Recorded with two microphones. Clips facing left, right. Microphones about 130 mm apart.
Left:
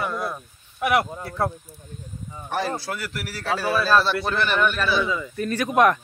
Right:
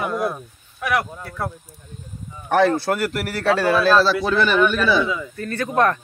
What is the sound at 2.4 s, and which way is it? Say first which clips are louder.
A man's voice: right 10 dB; 65° right (ahead or behind).